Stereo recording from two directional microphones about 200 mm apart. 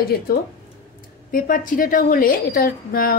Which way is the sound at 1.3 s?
45° left (ahead or behind).